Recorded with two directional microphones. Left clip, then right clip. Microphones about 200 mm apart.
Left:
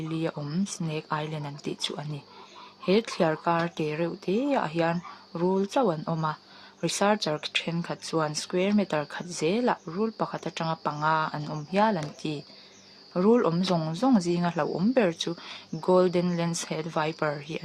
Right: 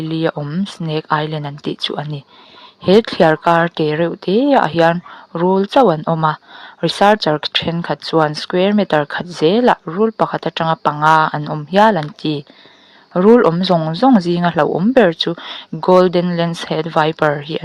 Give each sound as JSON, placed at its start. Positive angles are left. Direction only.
{"t": 0.2, "sound": "speech", "side_deg": -40}
{"t": 4.3, "sound": "speech", "side_deg": -15}
{"t": 4.8, "sound": "speech", "side_deg": -40}
{"t": 13.1, "sound": "speech", "side_deg": -40}